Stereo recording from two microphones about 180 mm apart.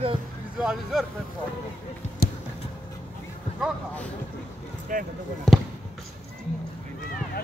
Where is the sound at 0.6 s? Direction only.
Centre (ahead or behind).